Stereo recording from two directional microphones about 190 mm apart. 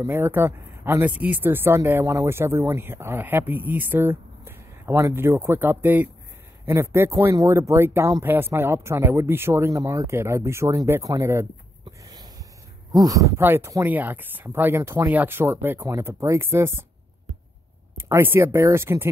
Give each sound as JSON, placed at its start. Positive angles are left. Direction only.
{"t": 0.0, "sound": "speech", "side_deg": -10}
{"t": 11.8, "sound": "a sound", "side_deg": -20}
{"t": 12.9, "sound": "speech", "side_deg": -20}
{"t": 17.9, "sound": "speech", "side_deg": -15}